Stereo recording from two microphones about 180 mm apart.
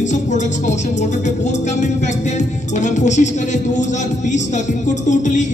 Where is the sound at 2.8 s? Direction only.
40° left (ahead or behind).